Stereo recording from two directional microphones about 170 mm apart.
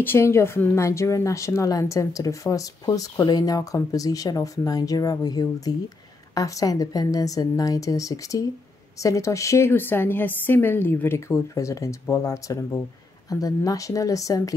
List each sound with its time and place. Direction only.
0.0 s a woman's voice: 15° left (ahead or behind)